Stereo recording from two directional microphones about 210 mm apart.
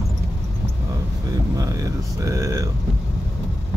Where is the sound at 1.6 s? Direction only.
15° right (ahead or behind).